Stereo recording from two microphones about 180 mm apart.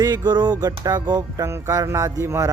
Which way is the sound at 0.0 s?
20° right (ahead or behind).